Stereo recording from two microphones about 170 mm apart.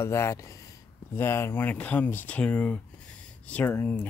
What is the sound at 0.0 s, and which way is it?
Speech, 15° left (ahead or behind).